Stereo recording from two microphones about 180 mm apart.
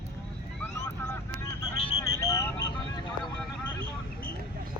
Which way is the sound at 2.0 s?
15° left (ahead or behind).